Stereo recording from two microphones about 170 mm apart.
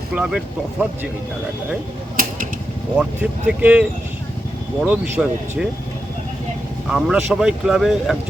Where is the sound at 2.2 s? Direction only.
55° right (ahead or behind).